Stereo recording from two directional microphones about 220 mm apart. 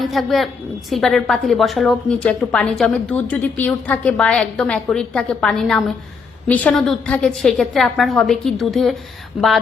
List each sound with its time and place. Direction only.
0.0 s a woman's voice: centre (ahead or behind)